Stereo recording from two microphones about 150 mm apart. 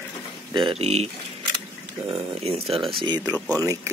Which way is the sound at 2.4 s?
40° right (ahead or behind).